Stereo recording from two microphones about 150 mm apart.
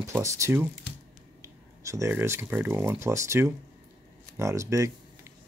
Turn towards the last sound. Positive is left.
turn(degrees=-20)  # may be behind; listen again after turning